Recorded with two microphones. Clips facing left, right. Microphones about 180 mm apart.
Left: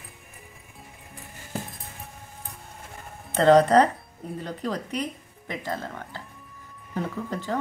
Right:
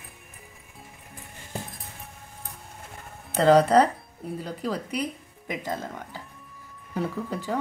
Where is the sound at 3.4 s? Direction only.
5° right (ahead or behind).